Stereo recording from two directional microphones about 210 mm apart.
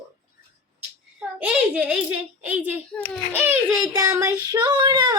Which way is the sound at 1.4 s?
5° right (ahead or behind).